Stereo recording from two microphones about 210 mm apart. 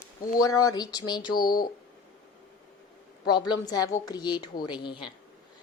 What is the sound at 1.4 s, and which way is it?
Speech, 45° left (ahead or behind).